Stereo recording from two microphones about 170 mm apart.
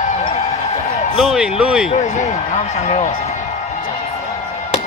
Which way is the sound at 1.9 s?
45° left (ahead or behind).